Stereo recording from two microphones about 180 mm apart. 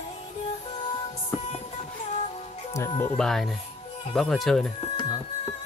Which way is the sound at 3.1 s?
Centre (ahead or behind).